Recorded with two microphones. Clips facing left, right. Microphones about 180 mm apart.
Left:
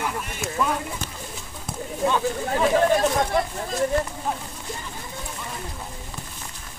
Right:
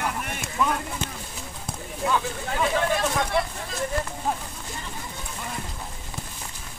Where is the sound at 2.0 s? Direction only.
30° left (ahead or behind).